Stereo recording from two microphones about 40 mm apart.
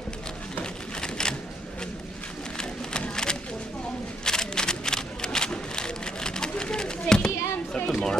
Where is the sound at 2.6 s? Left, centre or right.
Centre.